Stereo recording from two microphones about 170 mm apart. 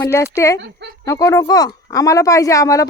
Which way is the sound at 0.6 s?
90° right.